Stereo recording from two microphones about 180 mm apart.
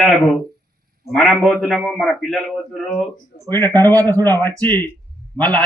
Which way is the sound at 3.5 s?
10° left (ahead or behind).